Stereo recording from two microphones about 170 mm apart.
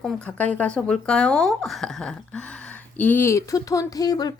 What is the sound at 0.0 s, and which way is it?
Speech, 5° left (ahead or behind).